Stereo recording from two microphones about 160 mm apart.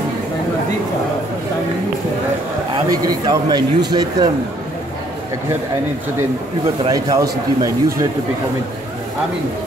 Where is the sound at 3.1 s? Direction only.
25° right (ahead or behind).